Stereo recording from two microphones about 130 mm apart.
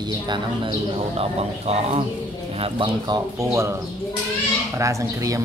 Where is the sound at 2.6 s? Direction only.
40° right (ahead or behind).